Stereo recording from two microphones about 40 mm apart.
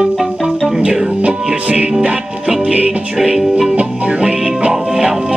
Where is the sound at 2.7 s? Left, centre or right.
Right.